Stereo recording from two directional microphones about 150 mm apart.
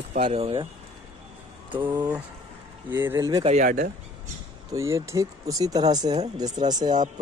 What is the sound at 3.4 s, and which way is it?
Speech, 50° right (ahead or behind).